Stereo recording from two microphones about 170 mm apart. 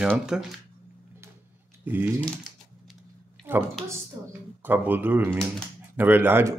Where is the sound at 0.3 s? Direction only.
5° right (ahead or behind).